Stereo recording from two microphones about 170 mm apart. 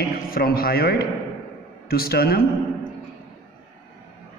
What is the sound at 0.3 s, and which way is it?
A man's voice, 60° left (ahead or behind).